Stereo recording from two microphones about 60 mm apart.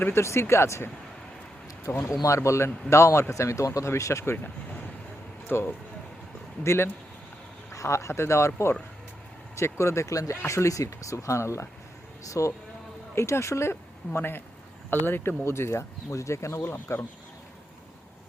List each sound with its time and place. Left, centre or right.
0.0 s speech: left
1.9 s speech: left
2.2 s speech: left
5.5 s speech: left
6.7 s speech: left
7.7 s speech: left
16.6 s speech: left